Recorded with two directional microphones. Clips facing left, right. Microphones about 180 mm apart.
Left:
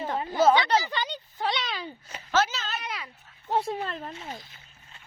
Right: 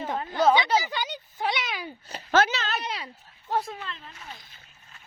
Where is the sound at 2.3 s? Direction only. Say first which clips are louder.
Right 3 dB; 65° right (ahead or behind).